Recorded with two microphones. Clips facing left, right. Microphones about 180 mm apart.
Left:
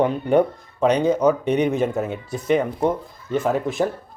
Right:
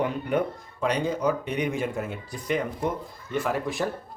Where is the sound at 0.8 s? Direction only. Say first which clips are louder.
Left 8 dB; 70° left (ahead or behind).